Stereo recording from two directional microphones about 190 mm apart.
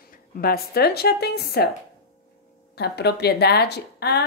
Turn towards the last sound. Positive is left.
turn(degrees=60)  # may be behind; listen again after turning